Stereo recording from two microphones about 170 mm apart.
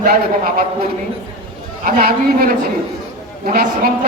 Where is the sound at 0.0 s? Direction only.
60° right (ahead or behind).